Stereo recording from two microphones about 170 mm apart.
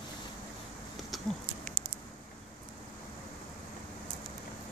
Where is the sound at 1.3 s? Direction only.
Centre (ahead or behind).